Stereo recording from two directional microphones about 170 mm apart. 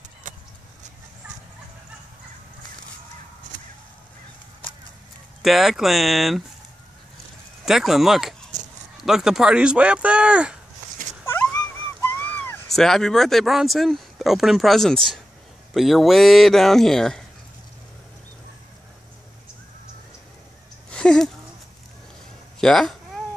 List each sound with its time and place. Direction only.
5.4 s speech: centre (ahead or behind)
7.6 s speech: centre (ahead or behind)
11.2 s a sound: 10° left (ahead or behind)
15.7 s speech: centre (ahead or behind)
20.9 s a sound: 5° left (ahead or behind)
22.6 s cat: centre (ahead or behind)